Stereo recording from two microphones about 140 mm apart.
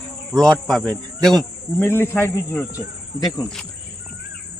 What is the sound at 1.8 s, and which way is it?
Speech, 15° left (ahead or behind).